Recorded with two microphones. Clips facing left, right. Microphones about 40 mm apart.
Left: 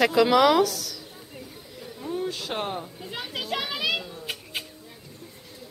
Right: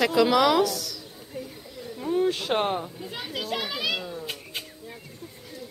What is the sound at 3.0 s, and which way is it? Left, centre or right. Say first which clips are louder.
Children playing: even; centre.